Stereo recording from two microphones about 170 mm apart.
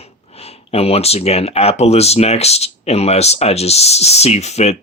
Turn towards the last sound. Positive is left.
turn(degrees=40)  # may be behind; listen again after turning